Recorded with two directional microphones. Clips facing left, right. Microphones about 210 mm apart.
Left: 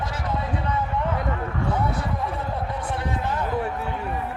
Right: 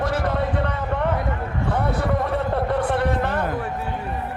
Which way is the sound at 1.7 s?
60° right (ahead or behind).